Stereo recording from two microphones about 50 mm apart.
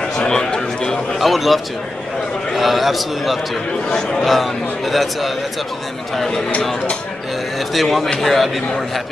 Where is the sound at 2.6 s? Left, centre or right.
Centre.